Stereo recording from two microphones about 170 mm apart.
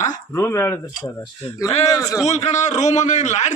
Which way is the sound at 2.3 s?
40° left (ahead or behind).